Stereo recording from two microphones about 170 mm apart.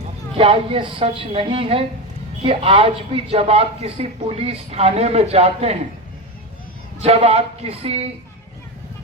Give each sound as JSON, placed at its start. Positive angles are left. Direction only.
{"t": 0.3, "sound": "a man's voice", "side_deg": -30}
{"t": 7.0, "sound": "a man's voice", "side_deg": -35}